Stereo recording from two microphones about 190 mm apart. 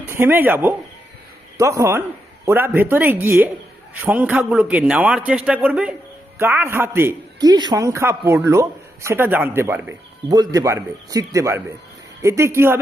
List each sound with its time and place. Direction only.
0.1 s a man's voice: 10° right (ahead or behind)